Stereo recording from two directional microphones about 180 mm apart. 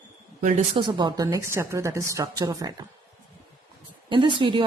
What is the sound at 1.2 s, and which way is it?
A woman's voice, 15° right (ahead or behind).